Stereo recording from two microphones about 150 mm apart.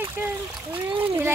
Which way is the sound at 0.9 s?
35° right (ahead or behind).